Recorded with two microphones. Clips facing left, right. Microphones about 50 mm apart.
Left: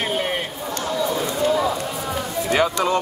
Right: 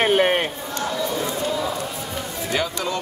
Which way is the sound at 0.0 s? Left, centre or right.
Right.